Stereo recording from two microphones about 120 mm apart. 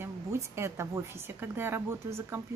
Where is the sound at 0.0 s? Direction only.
25° right (ahead or behind).